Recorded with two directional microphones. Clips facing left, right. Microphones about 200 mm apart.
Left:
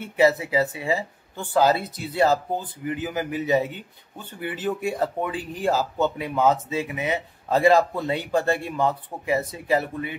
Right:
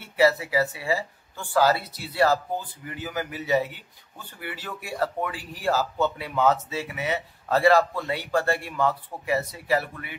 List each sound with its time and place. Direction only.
0.0 s speech: 20° left (ahead or behind)